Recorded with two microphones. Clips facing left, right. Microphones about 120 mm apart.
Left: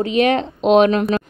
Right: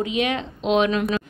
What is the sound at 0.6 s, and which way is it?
Speech, 50° left (ahead or behind).